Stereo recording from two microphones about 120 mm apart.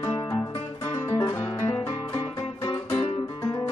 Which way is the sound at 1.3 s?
20° left (ahead or behind).